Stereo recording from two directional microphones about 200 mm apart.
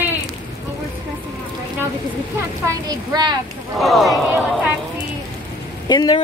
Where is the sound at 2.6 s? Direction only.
20° right (ahead or behind).